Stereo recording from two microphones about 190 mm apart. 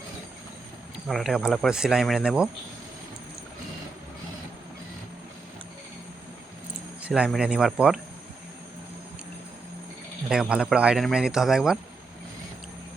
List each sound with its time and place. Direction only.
1.0 s speech: centre (ahead or behind)
7.0 s speech: 5° right (ahead or behind)
10.2 s speech: 5° right (ahead or behind)